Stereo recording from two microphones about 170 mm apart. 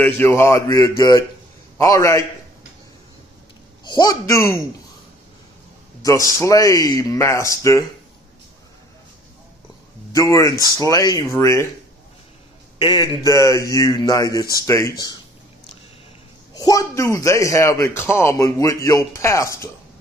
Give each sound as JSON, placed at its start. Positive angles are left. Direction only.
{"t": 0.0, "sound": "a man's voice", "side_deg": 15}
{"t": 3.8, "sound": "speech", "side_deg": 25}
{"t": 6.0, "sound": "speech", "side_deg": 20}
{"t": 10.1, "sound": "speech", "side_deg": 20}
{"t": 12.7, "sound": "speech", "side_deg": 25}
{"t": 16.5, "sound": "speech", "side_deg": 20}